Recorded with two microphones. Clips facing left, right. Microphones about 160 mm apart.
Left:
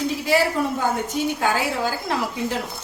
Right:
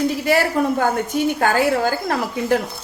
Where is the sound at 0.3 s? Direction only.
50° right (ahead or behind).